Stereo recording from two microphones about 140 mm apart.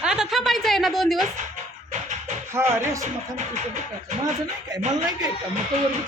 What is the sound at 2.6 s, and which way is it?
Speech, 20° right (ahead or behind).